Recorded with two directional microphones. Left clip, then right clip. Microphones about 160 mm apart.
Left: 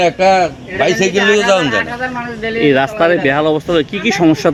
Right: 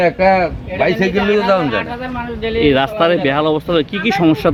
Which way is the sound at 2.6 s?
10° right (ahead or behind).